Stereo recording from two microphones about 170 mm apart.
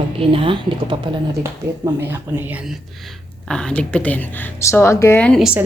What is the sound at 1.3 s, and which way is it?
Speech, 15° right (ahead or behind).